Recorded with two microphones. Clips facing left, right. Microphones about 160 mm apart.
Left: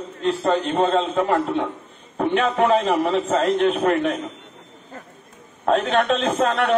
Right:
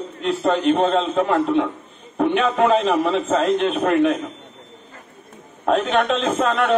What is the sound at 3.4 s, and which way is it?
Speech, 15° right (ahead or behind).